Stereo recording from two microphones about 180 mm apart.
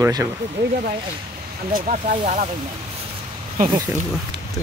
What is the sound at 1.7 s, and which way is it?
Speech, 50° right (ahead or behind).